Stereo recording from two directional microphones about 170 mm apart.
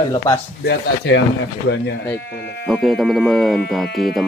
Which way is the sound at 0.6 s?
90° left.